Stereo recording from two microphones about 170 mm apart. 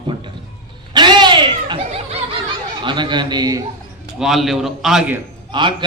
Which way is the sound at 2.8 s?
30° right (ahead or behind).